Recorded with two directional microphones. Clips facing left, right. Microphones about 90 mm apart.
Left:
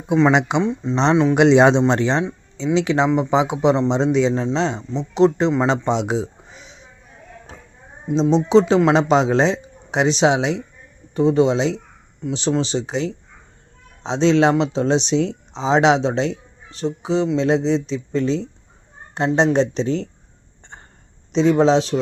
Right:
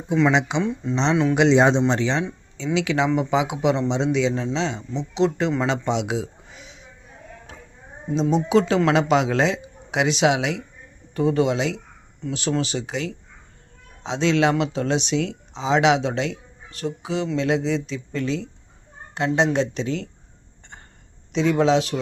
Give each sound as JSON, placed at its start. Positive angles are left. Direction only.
{"t": 0.3, "sound": "speech", "side_deg": 50}
{"t": 0.6, "sound": "speech", "side_deg": 25}
{"t": 1.3, "sound": "speech", "side_deg": 55}
{"t": 1.9, "sound": "speech", "side_deg": 45}
{"t": 2.7, "sound": "speech", "side_deg": 35}
{"t": 8.1, "sound": "speech", "side_deg": 25}
{"t": 21.3, "sound": "speech", "side_deg": 30}